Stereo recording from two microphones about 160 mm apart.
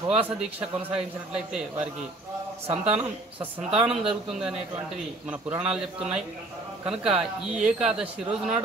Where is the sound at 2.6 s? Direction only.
35° right (ahead or behind).